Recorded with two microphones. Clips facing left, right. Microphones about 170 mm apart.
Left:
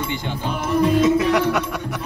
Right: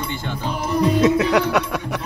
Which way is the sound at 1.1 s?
70° right (ahead or behind).